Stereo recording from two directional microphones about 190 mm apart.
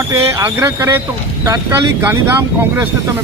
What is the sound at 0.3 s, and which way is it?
Speech, 15° right (ahead or behind).